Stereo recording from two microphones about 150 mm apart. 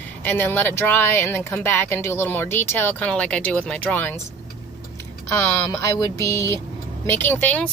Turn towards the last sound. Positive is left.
turn(degrees=10)  # may be behind; listen again after turning